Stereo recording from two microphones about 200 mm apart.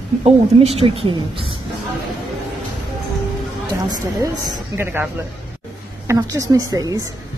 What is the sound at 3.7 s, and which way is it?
A woman's voice, 15° right (ahead or behind).